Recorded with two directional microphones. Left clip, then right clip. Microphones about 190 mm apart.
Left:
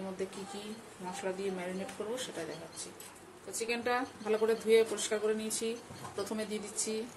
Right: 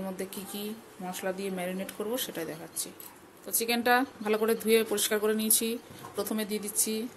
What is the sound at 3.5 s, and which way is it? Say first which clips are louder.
A woman's voice: right 7 dB; 50° right (ahead or behind).